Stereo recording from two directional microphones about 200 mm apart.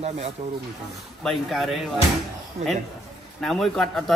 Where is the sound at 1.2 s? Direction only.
Centre (ahead or behind).